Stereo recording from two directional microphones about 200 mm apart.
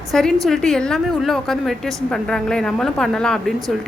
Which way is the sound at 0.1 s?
Centre (ahead or behind).